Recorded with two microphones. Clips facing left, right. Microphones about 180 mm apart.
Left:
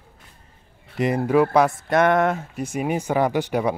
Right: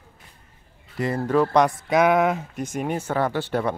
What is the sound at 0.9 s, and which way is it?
Speech, 15° left (ahead or behind).